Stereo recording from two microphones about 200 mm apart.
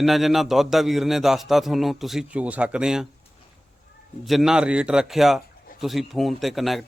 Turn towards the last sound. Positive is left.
turn(degrees=0)  # may be behind; listen again after turning